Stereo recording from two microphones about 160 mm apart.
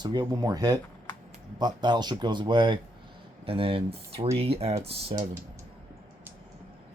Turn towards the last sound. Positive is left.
turn(degrees=-35)  # may be behind; listen again after turning